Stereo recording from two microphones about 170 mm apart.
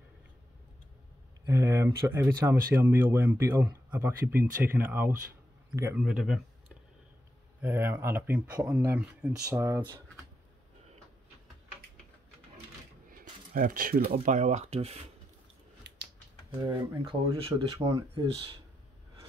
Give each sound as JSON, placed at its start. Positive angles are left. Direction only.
{"t": 1.4, "sound": "speech", "side_deg": -15}
{"t": 7.6, "sound": "speech", "side_deg": -10}
{"t": 13.2, "sound": "a sound", "side_deg": -55}
{"t": 14.2, "sound": "speech", "side_deg": -45}
{"t": 15.8, "sound": "finger snapping", "side_deg": -90}
{"t": 16.5, "sound": "speech", "side_deg": -25}
{"t": 17.8, "sound": "speech", "side_deg": -20}